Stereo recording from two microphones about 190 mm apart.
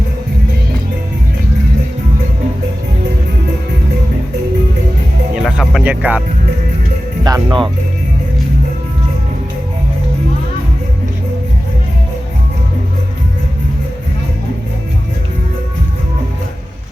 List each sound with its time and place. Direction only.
5.3 s music: 5° right (ahead or behind)
7.3 s speech: 25° right (ahead or behind)